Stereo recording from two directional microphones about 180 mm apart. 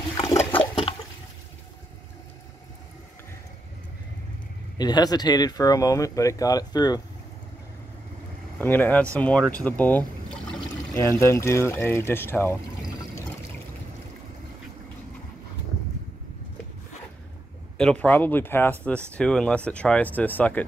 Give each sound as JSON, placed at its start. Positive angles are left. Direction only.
{"t": 0.5, "sound": "toilet flush", "side_deg": 30}
{"t": 4.7, "sound": "speech", "side_deg": 25}
{"t": 8.5, "sound": "speech", "side_deg": 10}
{"t": 17.7, "sound": "speech", "side_deg": 5}